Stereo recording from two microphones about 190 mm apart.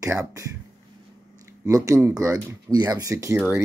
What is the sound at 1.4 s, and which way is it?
Speech, 15° right (ahead or behind).